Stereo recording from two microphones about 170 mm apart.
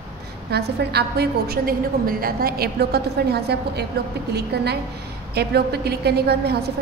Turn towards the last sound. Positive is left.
turn(degrees=-70)  # may be behind; listen again after turning